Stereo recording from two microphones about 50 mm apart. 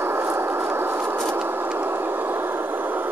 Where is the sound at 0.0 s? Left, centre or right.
Right.